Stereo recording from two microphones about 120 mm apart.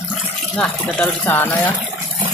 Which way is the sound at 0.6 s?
5° left (ahead or behind).